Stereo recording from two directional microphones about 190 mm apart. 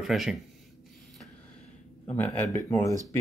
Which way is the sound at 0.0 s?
Centre (ahead or behind).